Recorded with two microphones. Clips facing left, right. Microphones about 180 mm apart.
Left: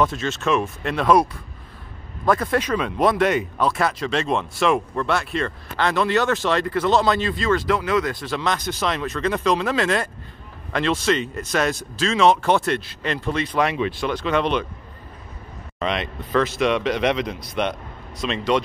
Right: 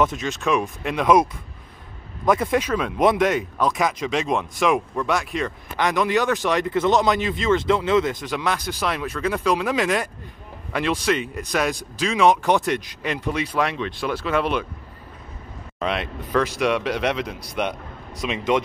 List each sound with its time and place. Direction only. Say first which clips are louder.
0.0 s speech: even; 15° right (ahead or behind)
2.2 s speech: even; 20° right (ahead or behind)
2.6 s speech: right 1 dB; 5° right (ahead or behind)
13.6 s speech: left 2 dB; 5° left (ahead or behind)
15.8 s speech: even; 5° right (ahead or behind)